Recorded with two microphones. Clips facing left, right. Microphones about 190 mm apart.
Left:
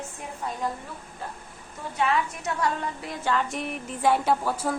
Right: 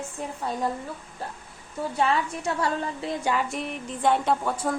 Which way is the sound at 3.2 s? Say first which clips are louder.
Left 1 dB; 15° right (ahead or behind).